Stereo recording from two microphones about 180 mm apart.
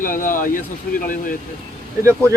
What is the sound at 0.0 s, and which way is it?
Speech, 50° left (ahead or behind).